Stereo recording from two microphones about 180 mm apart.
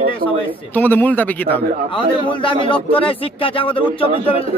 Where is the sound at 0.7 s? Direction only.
10° left (ahead or behind).